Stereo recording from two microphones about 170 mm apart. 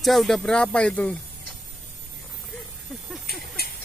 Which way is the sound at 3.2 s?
65° left (ahead or behind).